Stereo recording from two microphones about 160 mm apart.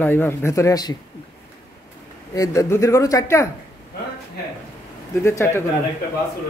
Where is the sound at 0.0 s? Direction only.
15° left (ahead or behind).